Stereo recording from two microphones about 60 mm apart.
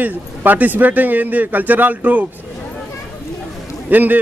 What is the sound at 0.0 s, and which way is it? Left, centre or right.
A man's voice, right.